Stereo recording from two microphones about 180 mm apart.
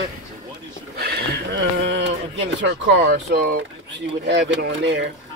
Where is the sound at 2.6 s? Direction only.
90° right.